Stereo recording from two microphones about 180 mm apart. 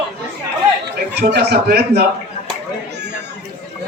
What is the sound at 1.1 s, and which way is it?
Speech, 65° right (ahead or behind).